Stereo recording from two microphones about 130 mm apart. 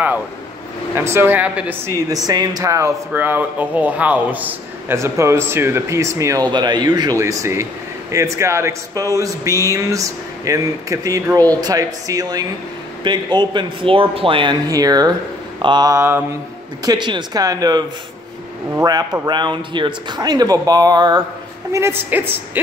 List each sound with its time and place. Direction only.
0.9 s speech: 20° right (ahead or behind)
1.9 s a man's voice: 25° right (ahead or behind); by 14.5 s 45° right (ahead or behind)
14.7 s a man's voice: 30° right (ahead or behind)
19.2 s speech: 35° right (ahead or behind)
21.7 s speech: 20° right (ahead or behind)